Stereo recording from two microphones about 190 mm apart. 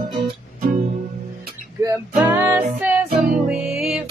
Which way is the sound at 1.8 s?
15° right (ahead or behind).